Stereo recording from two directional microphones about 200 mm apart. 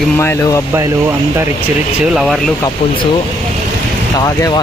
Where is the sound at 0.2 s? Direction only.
15° left (ahead or behind).